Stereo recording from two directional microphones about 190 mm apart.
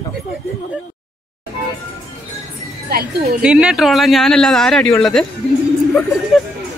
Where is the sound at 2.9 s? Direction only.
50° right (ahead or behind).